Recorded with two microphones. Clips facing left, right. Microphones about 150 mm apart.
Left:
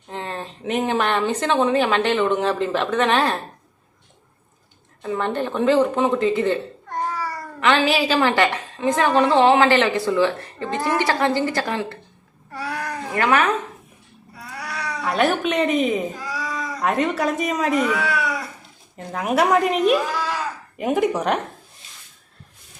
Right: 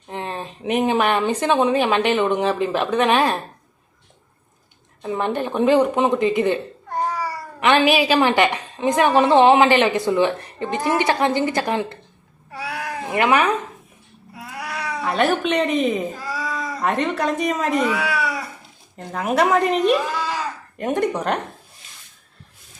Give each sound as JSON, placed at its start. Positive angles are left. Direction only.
{"t": 0.1, "sound": "speech", "side_deg": -15}
{"t": 5.0, "sound": "speech", "side_deg": -15}
{"t": 12.5, "sound": "cat", "side_deg": -10}
{"t": 14.3, "sound": "cat", "side_deg": -5}
{"t": 15.1, "sound": "a woman's voice", "side_deg": 0}